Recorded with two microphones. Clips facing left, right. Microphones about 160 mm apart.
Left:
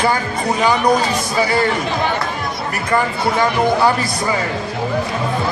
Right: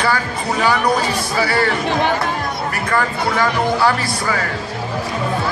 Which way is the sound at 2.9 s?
20° left (ahead or behind).